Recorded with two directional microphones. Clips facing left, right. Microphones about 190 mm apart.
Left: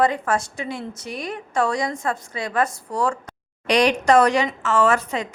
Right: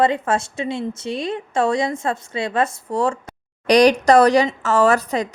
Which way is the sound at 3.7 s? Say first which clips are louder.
Right 5 dB; 40° right (ahead or behind).